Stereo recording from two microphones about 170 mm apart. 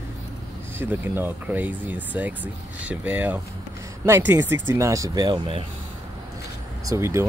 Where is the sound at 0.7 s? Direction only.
10° right (ahead or behind); by 5.7 s 30° right (ahead or behind).